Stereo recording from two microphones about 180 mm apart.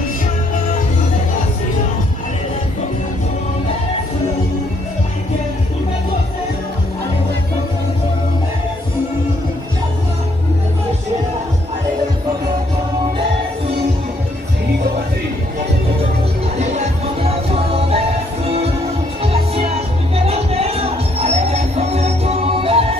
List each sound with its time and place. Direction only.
16.5 s music: 40° right (ahead or behind)